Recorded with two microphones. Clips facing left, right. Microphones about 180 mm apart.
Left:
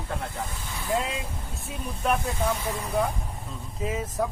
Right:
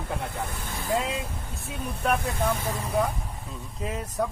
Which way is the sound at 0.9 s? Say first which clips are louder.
Even; centre (ahead or behind).